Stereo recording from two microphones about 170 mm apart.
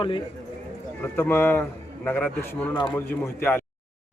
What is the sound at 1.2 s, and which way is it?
Speech, 15° left (ahead or behind).